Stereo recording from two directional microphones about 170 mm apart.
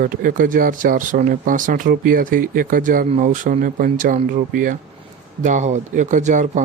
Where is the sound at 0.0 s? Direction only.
50° right (ahead or behind).